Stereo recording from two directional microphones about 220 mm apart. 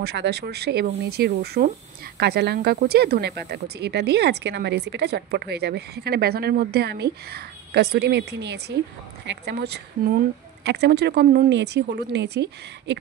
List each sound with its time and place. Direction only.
0.0 s speech: 50° right (ahead or behind)